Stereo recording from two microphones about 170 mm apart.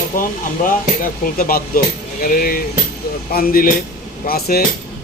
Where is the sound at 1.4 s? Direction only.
60° left (ahead or behind).